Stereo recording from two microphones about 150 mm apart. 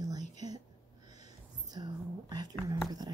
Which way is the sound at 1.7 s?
25° right (ahead or behind).